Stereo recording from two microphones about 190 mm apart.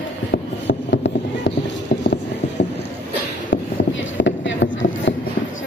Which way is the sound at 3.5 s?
80° left.